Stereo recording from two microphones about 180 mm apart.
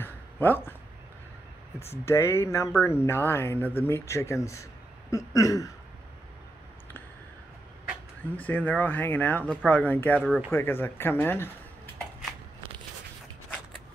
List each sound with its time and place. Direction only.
0.0 s a sound: 10° left (ahead or behind)
2.0 s speech: 15° left (ahead or behind)
8.4 s speech: 10° left (ahead or behind)